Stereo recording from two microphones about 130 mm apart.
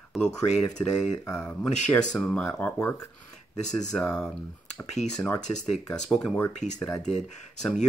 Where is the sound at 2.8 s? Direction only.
25° left (ahead or behind).